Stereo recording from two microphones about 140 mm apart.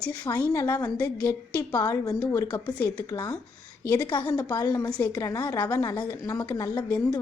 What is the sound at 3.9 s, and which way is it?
A woman's voice, 30° left (ahead or behind).